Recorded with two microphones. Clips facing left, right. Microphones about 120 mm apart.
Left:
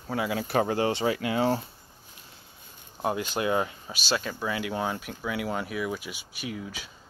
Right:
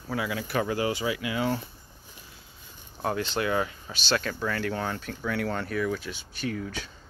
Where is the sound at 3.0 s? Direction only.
15° left (ahead or behind).